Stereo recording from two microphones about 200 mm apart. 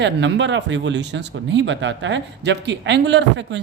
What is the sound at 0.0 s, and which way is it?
Speech, 65° right (ahead or behind).